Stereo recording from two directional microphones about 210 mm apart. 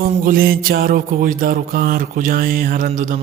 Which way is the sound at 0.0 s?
45° right (ahead or behind).